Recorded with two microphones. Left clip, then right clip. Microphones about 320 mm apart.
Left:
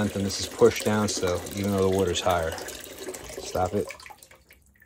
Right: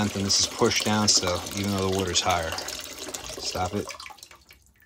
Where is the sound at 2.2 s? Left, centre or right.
Centre.